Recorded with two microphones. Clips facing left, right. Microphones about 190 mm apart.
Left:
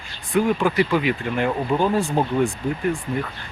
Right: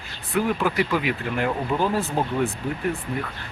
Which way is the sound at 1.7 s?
20° left (ahead or behind).